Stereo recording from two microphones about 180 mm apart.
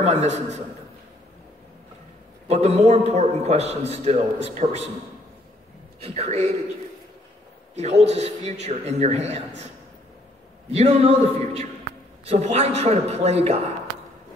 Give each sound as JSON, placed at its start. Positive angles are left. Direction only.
{"t": 0.0, "sound": "a man's voice", "side_deg": -40}
{"t": 2.4, "sound": "a man's voice", "side_deg": -35}
{"t": 5.9, "sound": "a man's voice", "side_deg": -35}
{"t": 7.7, "sound": "a man's voice", "side_deg": -40}
{"t": 10.7, "sound": "a man's voice", "side_deg": -35}